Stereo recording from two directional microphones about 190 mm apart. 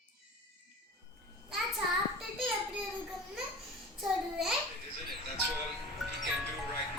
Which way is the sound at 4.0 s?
Centre (ahead or behind).